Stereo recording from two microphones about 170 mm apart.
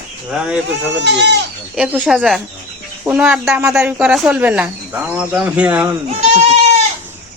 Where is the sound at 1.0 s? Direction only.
90° right.